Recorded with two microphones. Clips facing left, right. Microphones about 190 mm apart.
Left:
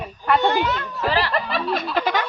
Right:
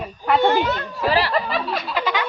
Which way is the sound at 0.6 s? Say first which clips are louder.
Right 1 dB; 40° right (ahead or behind).